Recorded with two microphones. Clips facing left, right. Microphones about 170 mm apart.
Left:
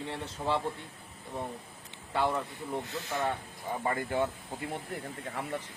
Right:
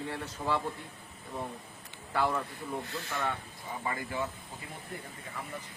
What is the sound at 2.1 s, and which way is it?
Speech, 25° left (ahead or behind).